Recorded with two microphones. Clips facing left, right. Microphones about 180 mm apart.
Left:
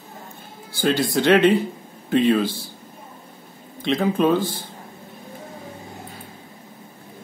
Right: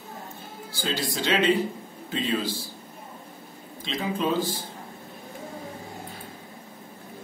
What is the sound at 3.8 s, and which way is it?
Speech, 60° left (ahead or behind).